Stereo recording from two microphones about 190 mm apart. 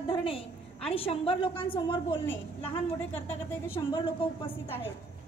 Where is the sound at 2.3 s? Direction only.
10° left (ahead or behind).